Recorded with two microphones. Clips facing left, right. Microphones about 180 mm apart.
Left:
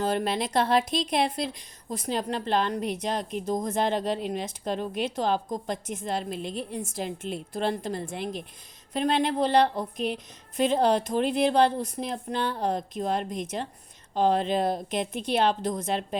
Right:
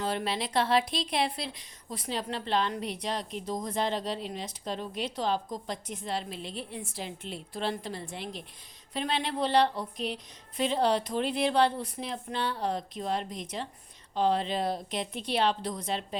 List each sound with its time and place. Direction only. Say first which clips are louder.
0.0 s a woman's voice: left 5 dB; 45° left (ahead or behind)